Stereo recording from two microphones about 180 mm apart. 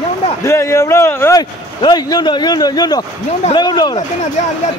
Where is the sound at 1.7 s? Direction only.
25° left (ahead or behind).